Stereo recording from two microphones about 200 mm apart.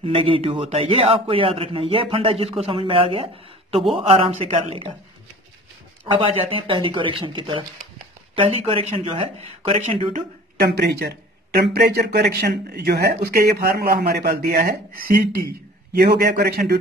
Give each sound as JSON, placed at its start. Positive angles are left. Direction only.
{"t": 0.0, "sound": "a man's voice", "side_deg": -25}
{"t": 6.2, "sound": "a man's voice", "side_deg": -25}
{"t": 10.6, "sound": "a man's voice", "side_deg": -55}